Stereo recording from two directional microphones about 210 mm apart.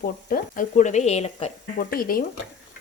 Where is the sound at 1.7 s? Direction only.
45° left (ahead or behind).